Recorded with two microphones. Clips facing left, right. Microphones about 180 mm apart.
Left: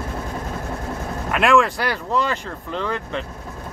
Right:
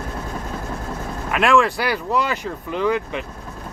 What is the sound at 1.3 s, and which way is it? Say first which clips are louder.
Speech: even; centre (ahead or behind).